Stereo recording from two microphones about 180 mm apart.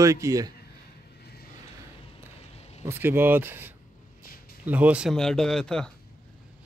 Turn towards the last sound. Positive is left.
turn(degrees=5)  # may be behind; listen again after turning